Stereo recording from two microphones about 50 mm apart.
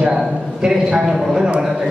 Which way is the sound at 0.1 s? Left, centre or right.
Centre.